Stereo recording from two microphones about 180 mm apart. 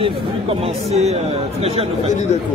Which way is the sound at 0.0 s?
35° right (ahead or behind).